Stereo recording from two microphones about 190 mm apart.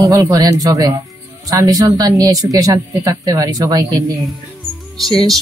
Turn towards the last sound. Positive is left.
turn(degrees=0)  # may be behind; listen again after turning